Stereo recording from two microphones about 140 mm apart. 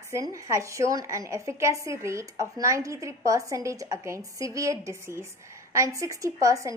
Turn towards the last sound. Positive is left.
turn(degrees=-20)  # may be behind; listen again after turning